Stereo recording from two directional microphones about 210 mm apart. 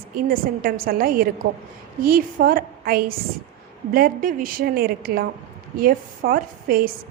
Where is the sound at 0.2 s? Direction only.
40° right (ahead or behind).